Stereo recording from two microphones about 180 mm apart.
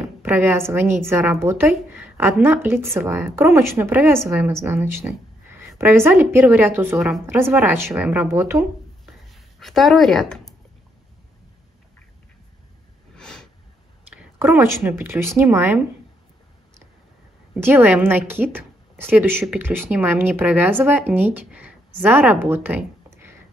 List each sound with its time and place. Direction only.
0.2 s a woman's voice: 10° right (ahead or behind)
9.3 s speech: centre (ahead or behind)
13.1 s a sound: 5° left (ahead or behind)
14.1 s a woman's voice: 10° right (ahead or behind)
17.6 s a woman's voice: 10° right (ahead or behind)